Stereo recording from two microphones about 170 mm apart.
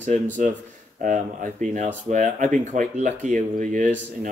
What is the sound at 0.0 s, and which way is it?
Speech, 45° right (ahead or behind).